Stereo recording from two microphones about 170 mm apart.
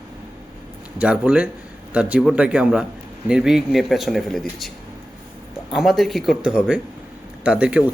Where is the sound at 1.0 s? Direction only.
5° right (ahead or behind).